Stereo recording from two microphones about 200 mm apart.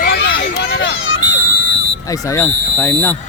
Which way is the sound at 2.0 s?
15° left (ahead or behind).